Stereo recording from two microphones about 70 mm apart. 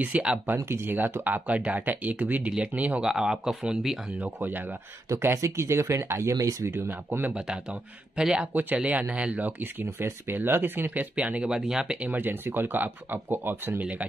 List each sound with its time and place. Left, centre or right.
0.0 s speech: centre
0.6 s speech: right
3.0 s speech: centre
4.1 s speech: right
5.2 s speech: right
6.3 s speech: right
6.7 s speech: right
7.1 s speech: right
7.3 s speech: centre
8.5 s speech: right; by 12.0 s centre
12.0 s speech: right